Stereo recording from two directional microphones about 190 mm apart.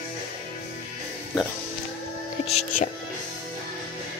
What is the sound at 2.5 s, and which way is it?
Speech, 40° left (ahead or behind).